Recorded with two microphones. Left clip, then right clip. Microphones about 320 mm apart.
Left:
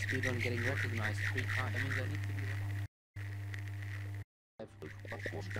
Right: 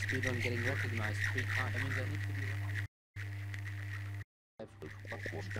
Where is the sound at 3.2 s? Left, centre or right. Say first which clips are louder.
Right 1 dB; centre.